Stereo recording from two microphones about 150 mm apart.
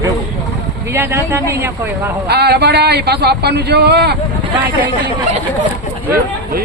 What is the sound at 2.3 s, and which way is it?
Speech, 90° right.